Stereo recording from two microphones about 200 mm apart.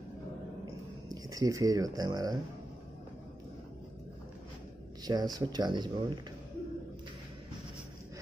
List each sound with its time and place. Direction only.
1.0 s speech: 20° right (ahead or behind)
5.0 s speech: 20° right (ahead or behind)